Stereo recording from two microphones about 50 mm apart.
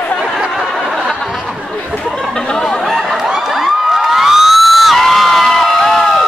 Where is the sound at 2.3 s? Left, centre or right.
Centre.